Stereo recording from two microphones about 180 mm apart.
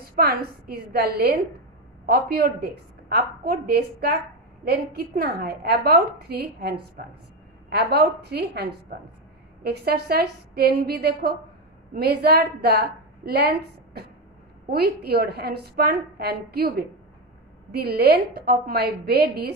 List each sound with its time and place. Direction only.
0.0 s a woman's voice: 60° right (ahead or behind)